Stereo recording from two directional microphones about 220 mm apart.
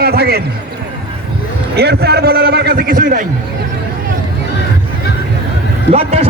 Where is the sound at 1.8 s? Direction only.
45° right (ahead or behind).